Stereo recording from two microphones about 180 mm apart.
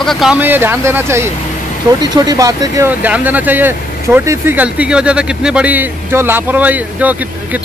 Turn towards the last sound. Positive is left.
turn(degrees=-10)  # may be behind; listen again after turning